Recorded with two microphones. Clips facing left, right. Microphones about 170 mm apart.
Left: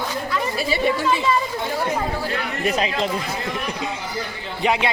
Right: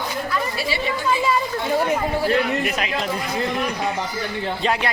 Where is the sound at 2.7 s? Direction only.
30° left (ahead or behind).